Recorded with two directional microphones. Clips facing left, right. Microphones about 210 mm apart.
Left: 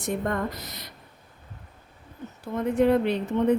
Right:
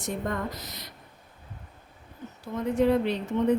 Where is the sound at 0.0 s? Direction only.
55° left (ahead or behind).